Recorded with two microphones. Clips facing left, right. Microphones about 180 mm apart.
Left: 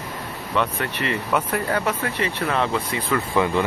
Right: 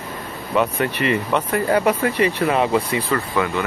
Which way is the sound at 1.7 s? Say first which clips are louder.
Right 6 dB; 15° right (ahead or behind).